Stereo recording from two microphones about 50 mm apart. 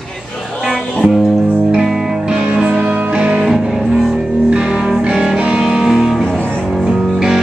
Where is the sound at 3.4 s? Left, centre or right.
Centre.